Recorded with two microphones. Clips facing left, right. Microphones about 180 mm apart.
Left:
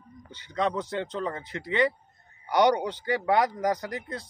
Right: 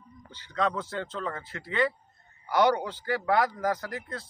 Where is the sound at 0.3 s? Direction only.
15° left (ahead or behind).